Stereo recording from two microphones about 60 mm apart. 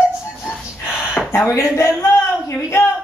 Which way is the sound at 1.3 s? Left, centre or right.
Left.